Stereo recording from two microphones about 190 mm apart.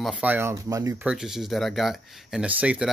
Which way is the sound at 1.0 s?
5° right (ahead or behind).